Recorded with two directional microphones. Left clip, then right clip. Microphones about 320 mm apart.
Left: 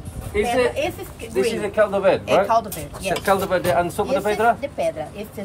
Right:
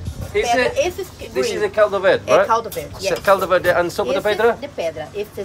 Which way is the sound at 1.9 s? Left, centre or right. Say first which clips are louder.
Right 3 dB; centre.